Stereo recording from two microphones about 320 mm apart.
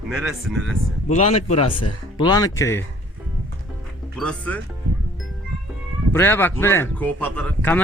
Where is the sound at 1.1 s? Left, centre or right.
Left.